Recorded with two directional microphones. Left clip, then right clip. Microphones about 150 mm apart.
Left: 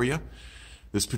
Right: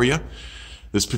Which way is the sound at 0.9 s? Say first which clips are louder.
Right 6 dB; 35° left (ahead or behind).